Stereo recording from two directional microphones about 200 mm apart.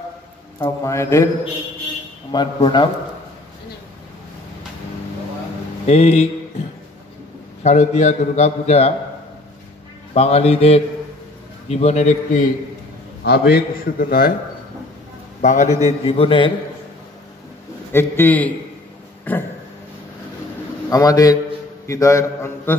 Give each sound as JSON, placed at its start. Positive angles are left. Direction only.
{"t": 0.6, "sound": "a man's voice", "side_deg": 15}
{"t": 2.3, "sound": "a man's voice", "side_deg": 20}
{"t": 5.9, "sound": "a man's voice", "side_deg": 30}
{"t": 7.6, "sound": "a man's voice", "side_deg": 35}
{"t": 10.1, "sound": "a man's voice", "side_deg": 30}
{"t": 13.2, "sound": "a man's voice", "side_deg": 55}
{"t": 15.4, "sound": "a man's voice", "side_deg": 40}
{"t": 16.1, "sound": "a man's voice", "side_deg": 25}
{"t": 17.9, "sound": "a man's voice", "side_deg": 10}
{"t": 20.9, "sound": "a man's voice", "side_deg": 20}